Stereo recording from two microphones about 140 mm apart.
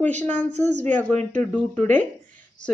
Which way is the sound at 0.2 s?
10° left (ahead or behind).